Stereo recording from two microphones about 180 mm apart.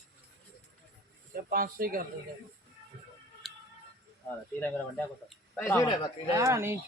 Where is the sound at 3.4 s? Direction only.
Centre (ahead or behind).